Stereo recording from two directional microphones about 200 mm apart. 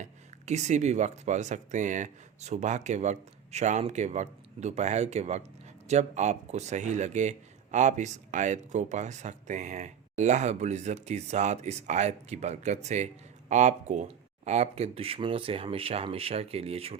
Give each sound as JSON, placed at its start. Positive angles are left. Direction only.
{"t": 0.0, "sound": "speech", "side_deg": -35}